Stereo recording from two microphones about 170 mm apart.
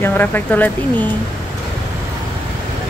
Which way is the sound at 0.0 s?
10° left (ahead or behind).